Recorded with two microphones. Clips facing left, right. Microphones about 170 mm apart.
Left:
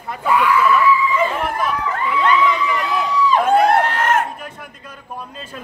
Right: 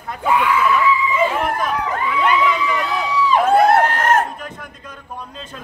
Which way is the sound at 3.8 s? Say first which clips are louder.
Right 2 dB; 40° right (ahead or behind).